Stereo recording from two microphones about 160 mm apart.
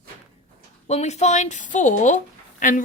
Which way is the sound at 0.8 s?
45° left (ahead or behind).